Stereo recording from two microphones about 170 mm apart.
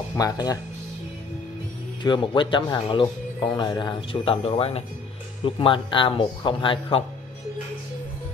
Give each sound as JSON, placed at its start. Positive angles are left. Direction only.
{"t": 0.1, "sound": "speech", "side_deg": 20}
{"t": 2.0, "sound": "speech", "side_deg": 30}